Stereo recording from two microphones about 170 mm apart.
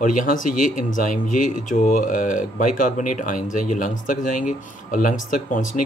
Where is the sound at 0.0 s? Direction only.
50° left (ahead or behind).